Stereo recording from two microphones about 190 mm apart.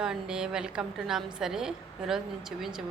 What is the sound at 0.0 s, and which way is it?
A woman's voice, 5° right (ahead or behind).